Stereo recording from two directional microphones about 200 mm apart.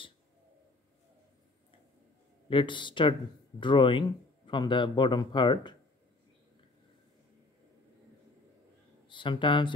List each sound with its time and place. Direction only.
2.5 s speech: 25° left (ahead or behind)
9.0 s speech: 25° left (ahead or behind)